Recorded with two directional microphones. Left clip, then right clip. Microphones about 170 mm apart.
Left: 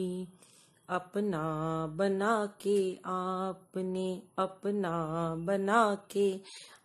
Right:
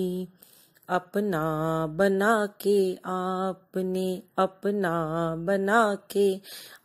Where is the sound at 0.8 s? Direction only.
30° right (ahead or behind).